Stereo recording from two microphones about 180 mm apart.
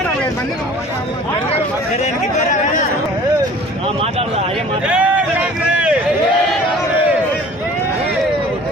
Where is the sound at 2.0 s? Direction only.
40° left (ahead or behind).